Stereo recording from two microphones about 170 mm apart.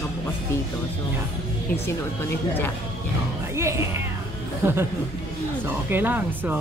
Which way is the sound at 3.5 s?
15° right (ahead or behind).